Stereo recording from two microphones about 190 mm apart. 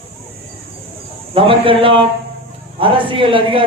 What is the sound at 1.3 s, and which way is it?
A man's voice, 30° right (ahead or behind).